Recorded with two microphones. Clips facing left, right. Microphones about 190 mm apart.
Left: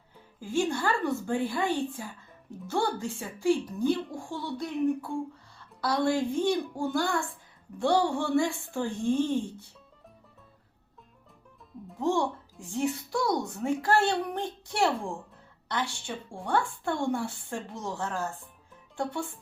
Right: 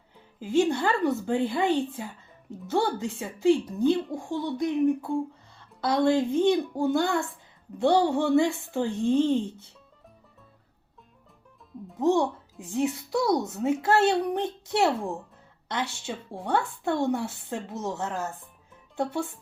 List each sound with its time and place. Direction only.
0.3 s speech: 20° right (ahead or behind)
11.9 s speech: 20° right (ahead or behind)